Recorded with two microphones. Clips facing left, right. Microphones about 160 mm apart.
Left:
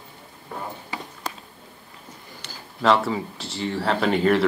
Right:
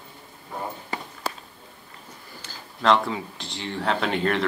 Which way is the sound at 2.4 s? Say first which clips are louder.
Left 2 dB; 75° left (ahead or behind).